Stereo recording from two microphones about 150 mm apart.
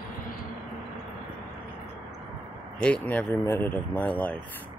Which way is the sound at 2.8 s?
10° left (ahead or behind).